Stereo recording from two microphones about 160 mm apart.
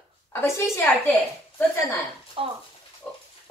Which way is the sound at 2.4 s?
35° right (ahead or behind).